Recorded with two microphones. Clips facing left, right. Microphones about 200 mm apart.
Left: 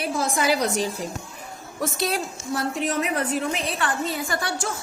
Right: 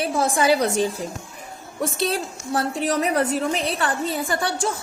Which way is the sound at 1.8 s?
30° right (ahead or behind).